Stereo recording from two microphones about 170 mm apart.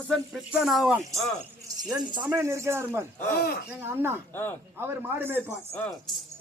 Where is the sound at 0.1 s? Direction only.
Centre (ahead or behind).